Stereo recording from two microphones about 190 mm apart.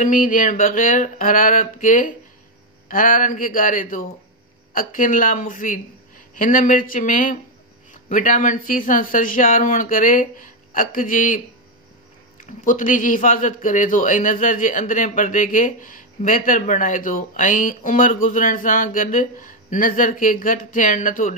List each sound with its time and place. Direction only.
0.0 s a man's voice: 45° left (ahead or behind)